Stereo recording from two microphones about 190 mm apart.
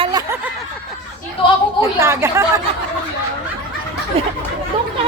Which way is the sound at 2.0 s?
15° right (ahead or behind).